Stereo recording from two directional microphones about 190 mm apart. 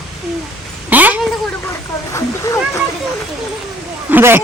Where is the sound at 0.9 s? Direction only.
10° right (ahead or behind).